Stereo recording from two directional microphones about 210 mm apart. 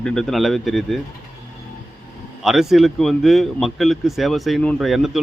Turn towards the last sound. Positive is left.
turn(degrees=0)  # may be behind; listen again after turning